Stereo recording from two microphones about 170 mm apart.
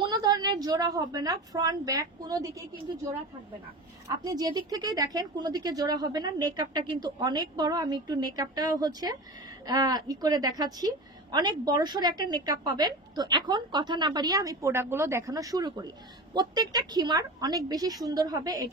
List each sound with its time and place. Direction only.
0.0 s a woman's voice: 25° right (ahead or behind)
4.2 s a woman's voice: 25° right (ahead or behind)